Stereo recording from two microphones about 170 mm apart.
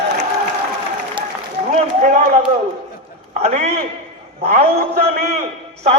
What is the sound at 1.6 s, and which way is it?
Run, 50° right (ahead or behind).